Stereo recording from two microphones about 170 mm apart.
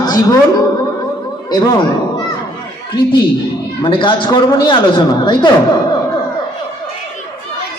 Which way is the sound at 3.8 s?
30° left (ahead or behind).